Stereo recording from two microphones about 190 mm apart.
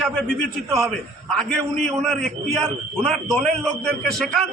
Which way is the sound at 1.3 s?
5° left (ahead or behind).